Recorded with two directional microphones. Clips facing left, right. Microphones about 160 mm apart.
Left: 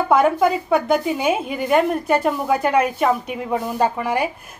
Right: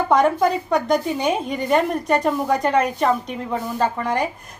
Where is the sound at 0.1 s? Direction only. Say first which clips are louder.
Left 1 dB; 5° left (ahead or behind).